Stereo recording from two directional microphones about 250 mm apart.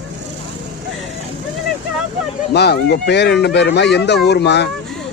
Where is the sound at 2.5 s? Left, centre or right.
Left.